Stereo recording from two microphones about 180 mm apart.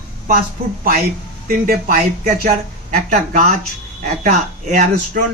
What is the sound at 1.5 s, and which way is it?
Speech, 50° right (ahead or behind).